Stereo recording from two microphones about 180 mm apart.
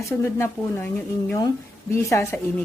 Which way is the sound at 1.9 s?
15° left (ahead or behind).